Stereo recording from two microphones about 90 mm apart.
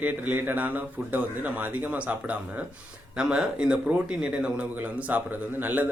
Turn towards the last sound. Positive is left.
turn(degrees=-20)  # may be behind; listen again after turning